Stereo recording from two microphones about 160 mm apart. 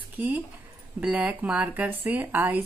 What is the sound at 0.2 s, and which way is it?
Speech, 10° right (ahead or behind).